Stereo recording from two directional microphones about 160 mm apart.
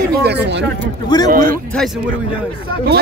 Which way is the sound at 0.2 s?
90° right.